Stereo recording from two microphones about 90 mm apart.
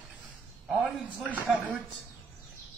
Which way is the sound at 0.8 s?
20° right (ahead or behind).